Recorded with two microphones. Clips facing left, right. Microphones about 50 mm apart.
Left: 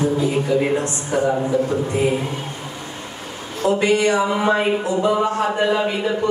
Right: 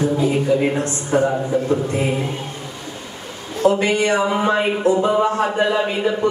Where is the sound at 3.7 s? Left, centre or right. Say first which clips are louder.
Even; right.